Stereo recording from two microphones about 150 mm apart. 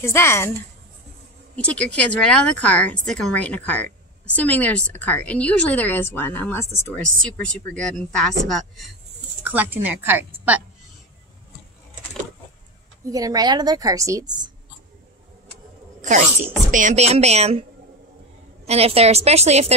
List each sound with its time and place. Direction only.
0.0 s a woman's voice: 15° left (ahead or behind)
1.6 s a woman's voice: 10° left (ahead or behind)
9.4 s a woman's voice: 10° right (ahead or behind)
13.1 s a woman's voice: 25° right (ahead or behind)
16.0 s speech: 55° right (ahead or behind)
18.7 s speech: 45° right (ahead or behind)